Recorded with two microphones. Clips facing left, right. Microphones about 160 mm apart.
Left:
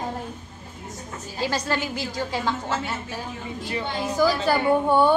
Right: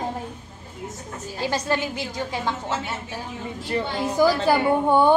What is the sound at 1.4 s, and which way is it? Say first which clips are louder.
A woman's voice: right 1 dB; 20° right (ahead or behind).